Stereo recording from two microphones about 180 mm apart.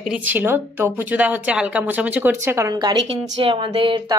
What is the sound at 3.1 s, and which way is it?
Speech, 30° right (ahead or behind).